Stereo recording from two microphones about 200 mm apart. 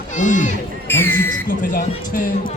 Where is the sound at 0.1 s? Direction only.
40° left (ahead or behind).